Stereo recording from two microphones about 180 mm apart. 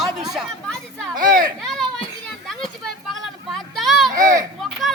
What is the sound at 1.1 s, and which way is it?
Speech, 50° right (ahead or behind).